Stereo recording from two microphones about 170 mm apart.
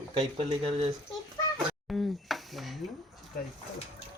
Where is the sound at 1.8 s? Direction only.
Centre (ahead or behind).